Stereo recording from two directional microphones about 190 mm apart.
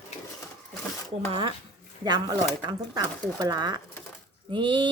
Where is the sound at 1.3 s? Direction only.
25° right (ahead or behind).